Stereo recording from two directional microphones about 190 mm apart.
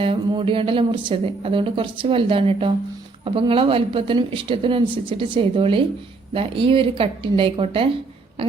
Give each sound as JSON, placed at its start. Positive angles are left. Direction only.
{"t": 0.0, "sound": "a woman's voice", "side_deg": -30}